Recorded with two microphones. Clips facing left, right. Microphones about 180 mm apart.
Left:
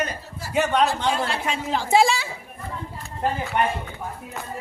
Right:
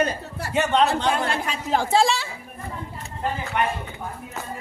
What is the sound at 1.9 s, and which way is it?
Speech, 5° left (ahead or behind).